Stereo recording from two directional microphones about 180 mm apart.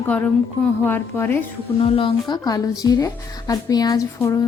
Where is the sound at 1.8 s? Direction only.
30° left (ahead or behind).